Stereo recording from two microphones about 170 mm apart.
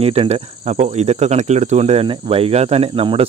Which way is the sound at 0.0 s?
35° right (ahead or behind).